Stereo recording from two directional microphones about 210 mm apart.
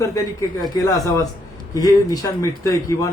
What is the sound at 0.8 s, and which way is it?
A man's voice, 15° left (ahead or behind).